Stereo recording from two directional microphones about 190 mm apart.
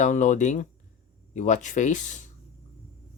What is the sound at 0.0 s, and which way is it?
Speech, 40° left (ahead or behind).